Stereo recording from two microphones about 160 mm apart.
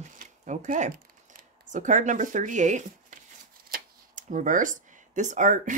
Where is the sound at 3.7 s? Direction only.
50° right (ahead or behind).